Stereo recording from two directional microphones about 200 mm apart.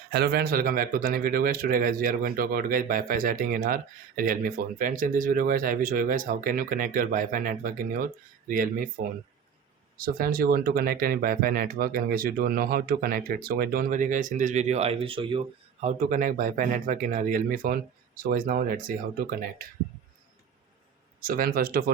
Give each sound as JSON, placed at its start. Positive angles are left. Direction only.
{"t": 0.1, "sound": "speech", "side_deg": -50}
{"t": 10.0, "sound": "speech", "side_deg": -45}
{"t": 15.8, "sound": "speech", "side_deg": -40}
{"t": 21.2, "sound": "speech", "side_deg": -45}